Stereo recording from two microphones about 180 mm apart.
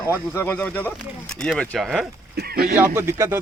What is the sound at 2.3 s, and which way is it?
Speech, 60° right (ahead or behind).